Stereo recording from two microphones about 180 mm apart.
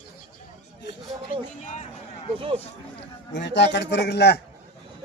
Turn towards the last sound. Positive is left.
turn(degrees=65)  # may be behind; listen again after turning